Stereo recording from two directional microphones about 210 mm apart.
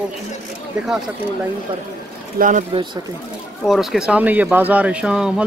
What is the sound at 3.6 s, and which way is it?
Speech, centre (ahead or behind).